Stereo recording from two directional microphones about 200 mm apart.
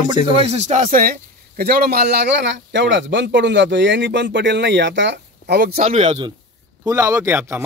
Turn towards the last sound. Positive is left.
turn(degrees=-10)  # may be behind; listen again after turning